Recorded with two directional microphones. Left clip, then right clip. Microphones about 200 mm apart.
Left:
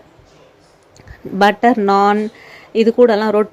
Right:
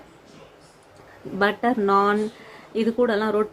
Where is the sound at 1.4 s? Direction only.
35° left (ahead or behind).